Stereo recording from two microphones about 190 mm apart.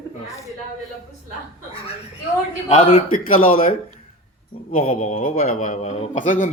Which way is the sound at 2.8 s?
30° left (ahead or behind).